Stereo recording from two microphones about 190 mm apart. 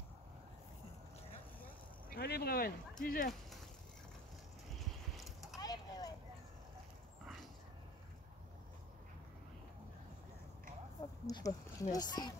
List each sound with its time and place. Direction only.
2.0 s speech: 55° left (ahead or behind)
4.7 s clip-clop: centre (ahead or behind)
5.6 s a sound: 20° left (ahead or behind)
11.2 s speech: 20° left (ahead or behind)